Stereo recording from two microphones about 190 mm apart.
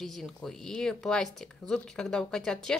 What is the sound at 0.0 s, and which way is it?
A woman's voice, centre (ahead or behind).